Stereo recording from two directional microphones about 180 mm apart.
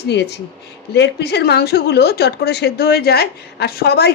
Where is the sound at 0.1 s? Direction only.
70° left (ahead or behind).